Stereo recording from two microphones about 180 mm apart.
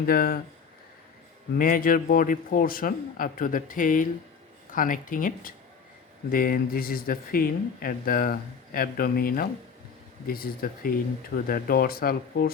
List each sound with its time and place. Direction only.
0.0 s speech: 55° left (ahead or behind)
1.5 s speech: 50° left (ahead or behind)